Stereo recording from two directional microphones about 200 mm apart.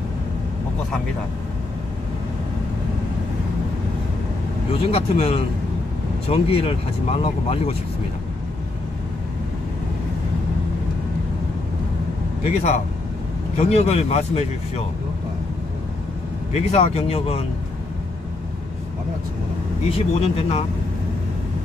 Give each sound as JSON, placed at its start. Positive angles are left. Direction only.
{"t": 4.9, "sound": "speech", "side_deg": 30}
{"t": 12.4, "sound": "speech", "side_deg": 35}
{"t": 16.5, "sound": "speech", "side_deg": 35}
{"t": 19.9, "sound": "speech", "side_deg": 30}